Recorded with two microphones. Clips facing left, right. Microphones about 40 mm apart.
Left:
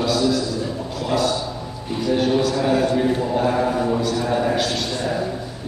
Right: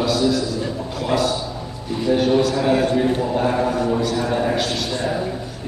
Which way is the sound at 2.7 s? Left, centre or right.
Right.